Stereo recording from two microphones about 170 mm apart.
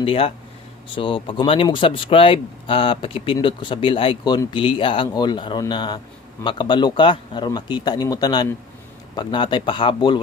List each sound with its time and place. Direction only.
0.0 s a man's voice: 35° left (ahead or behind)